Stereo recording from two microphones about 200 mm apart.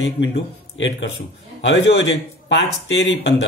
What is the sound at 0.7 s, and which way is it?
Speech, 65° left (ahead or behind).